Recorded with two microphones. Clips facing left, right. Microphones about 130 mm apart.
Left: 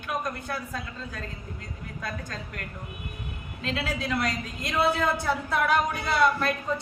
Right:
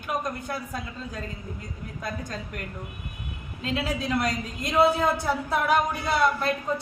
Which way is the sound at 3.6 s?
15° right (ahead or behind).